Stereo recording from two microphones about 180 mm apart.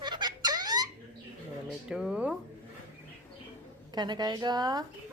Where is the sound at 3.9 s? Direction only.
25° right (ahead or behind).